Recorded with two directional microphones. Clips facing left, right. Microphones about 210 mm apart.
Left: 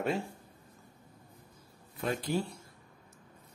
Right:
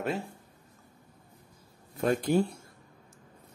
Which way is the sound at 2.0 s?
50° right (ahead or behind).